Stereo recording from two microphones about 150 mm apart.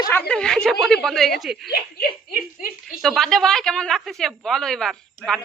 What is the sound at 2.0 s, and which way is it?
Speech, 75° left (ahead or behind).